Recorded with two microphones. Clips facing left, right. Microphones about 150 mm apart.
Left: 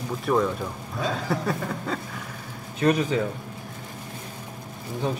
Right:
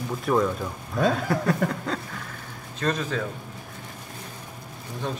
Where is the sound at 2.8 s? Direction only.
15° left (ahead or behind).